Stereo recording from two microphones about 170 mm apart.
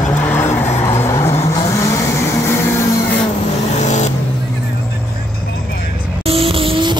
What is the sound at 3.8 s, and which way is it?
Vehicle, 45° left (ahead or behind).